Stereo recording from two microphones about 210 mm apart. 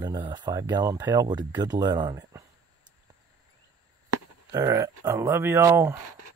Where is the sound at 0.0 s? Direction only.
20° right (ahead or behind).